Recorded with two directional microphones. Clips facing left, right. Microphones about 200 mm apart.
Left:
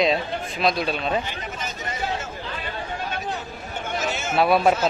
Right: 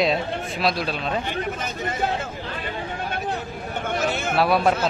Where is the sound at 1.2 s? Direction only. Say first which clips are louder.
Right 5 dB; 55° right (ahead or behind).